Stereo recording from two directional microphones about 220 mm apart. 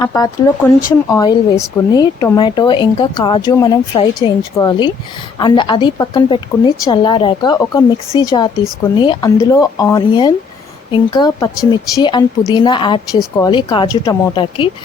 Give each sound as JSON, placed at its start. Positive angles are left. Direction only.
{"t": 0.0, "sound": "speech", "side_deg": 15}